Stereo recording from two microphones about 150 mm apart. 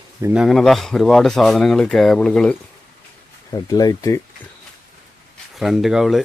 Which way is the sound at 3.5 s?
25° left (ahead or behind).